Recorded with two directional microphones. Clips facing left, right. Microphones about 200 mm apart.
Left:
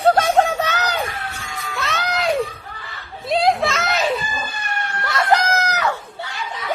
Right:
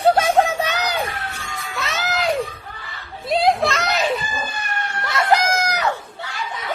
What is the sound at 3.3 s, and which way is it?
Children playing, centre (ahead or behind).